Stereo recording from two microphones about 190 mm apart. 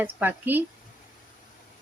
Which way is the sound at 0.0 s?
10° right (ahead or behind).